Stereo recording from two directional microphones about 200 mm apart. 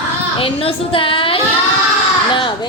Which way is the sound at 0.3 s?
30° left (ahead or behind).